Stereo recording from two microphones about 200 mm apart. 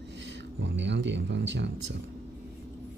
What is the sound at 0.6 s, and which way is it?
Speech, 60° right (ahead or behind).